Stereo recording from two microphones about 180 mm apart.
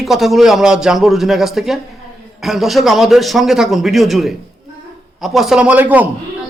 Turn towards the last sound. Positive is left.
turn(degrees=-10)  # may be behind; listen again after turning